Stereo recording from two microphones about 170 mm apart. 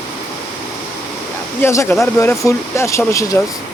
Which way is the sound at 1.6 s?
15° left (ahead or behind).